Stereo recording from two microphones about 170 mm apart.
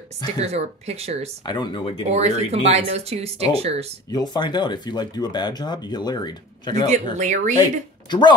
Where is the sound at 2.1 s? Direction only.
40° right (ahead or behind).